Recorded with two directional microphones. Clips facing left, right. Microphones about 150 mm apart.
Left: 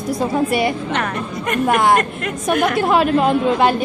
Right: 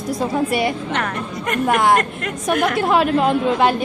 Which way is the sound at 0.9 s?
15° left (ahead or behind).